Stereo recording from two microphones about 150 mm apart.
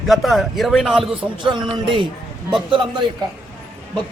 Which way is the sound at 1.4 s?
30° right (ahead or behind).